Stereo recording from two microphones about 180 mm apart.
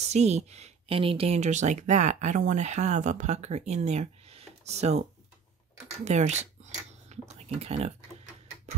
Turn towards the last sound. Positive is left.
turn(degrees=-35)  # may be behind; listen again after turning